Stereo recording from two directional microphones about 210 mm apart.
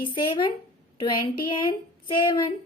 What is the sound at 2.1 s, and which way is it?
Speech, 20° left (ahead or behind).